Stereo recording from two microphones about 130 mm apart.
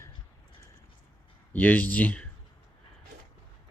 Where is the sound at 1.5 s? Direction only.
15° left (ahead or behind).